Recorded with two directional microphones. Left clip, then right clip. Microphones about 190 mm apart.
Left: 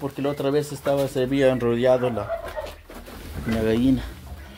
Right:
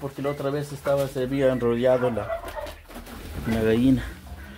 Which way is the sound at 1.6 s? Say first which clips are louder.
Left 1 dB; 10° left (ahead or behind).